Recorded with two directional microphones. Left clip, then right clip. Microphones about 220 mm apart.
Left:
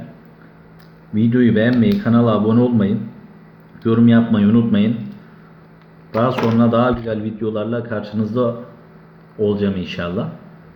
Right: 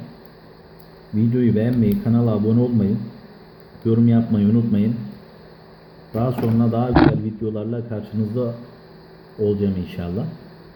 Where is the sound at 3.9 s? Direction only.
15° right (ahead or behind).